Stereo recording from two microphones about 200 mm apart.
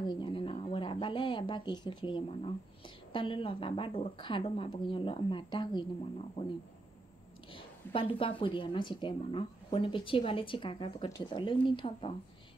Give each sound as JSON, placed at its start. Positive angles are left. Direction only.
{"t": 0.0, "sound": "a sound", "side_deg": 25}
{"t": 3.1, "sound": "a woman's voice", "side_deg": 25}
{"t": 7.5, "sound": "a woman's voice", "side_deg": 25}